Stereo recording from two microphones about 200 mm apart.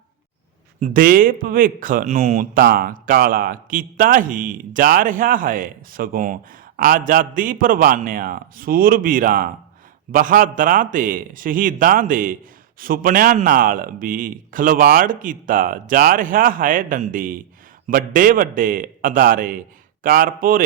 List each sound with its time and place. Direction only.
0.8 s speech: 45° right (ahead or behind)